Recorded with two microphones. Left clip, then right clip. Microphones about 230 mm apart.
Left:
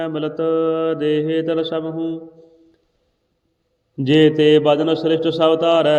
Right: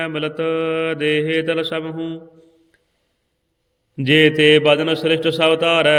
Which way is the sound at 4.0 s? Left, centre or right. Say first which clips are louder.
Even; right.